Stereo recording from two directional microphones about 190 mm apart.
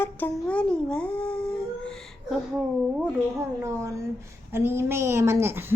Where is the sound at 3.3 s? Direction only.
15° right (ahead or behind).